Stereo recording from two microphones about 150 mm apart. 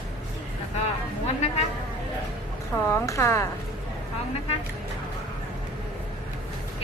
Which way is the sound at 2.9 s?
20° left (ahead or behind).